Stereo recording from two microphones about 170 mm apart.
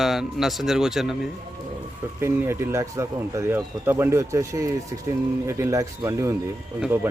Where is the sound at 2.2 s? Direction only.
15° right (ahead or behind).